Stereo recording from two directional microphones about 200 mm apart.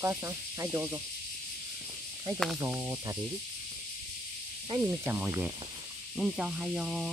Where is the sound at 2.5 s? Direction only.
10° right (ahead or behind).